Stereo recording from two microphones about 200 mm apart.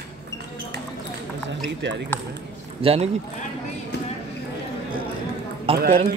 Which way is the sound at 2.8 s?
30° right (ahead or behind).